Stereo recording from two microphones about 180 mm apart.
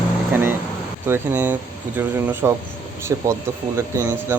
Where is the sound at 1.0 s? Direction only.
10° right (ahead or behind).